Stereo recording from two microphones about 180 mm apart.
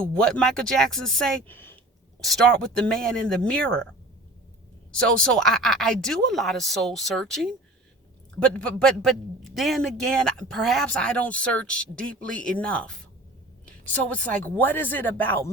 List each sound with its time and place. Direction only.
0.1 s a man's voice: 5° left (ahead or behind)
4.9 s a man's voice: 5° left (ahead or behind)